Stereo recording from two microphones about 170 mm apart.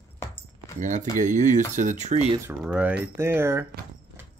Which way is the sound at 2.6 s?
10° right (ahead or behind).